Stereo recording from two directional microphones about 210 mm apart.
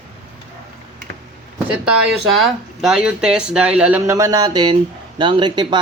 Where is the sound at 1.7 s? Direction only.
5° right (ahead or behind).